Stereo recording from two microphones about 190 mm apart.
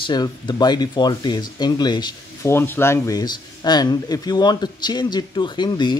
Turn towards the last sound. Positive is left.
turn(degrees=25)  # may be behind; listen again after turning